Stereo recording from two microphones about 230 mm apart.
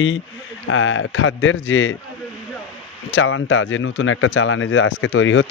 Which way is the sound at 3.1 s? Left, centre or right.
Left.